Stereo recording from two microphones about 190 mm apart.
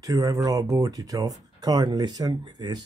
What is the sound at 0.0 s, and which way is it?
Speech, 15° right (ahead or behind).